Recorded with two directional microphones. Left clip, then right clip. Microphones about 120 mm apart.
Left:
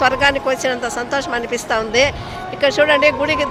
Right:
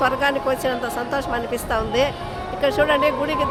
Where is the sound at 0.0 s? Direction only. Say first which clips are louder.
Left 5 dB; 10° left (ahead or behind).